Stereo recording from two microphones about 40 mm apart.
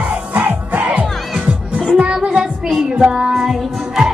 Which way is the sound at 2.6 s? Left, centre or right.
Centre.